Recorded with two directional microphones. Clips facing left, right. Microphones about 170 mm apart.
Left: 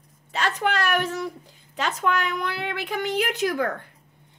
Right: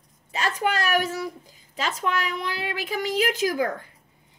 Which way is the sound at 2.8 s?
40° right (ahead or behind).